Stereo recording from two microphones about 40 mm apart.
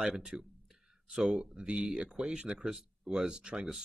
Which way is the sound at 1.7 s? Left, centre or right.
Right.